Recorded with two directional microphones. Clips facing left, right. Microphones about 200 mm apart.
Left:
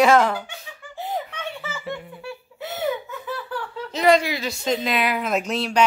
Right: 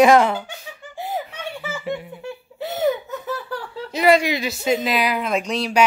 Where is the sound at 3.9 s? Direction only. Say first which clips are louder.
Right 1 dB; 10° right (ahead or behind).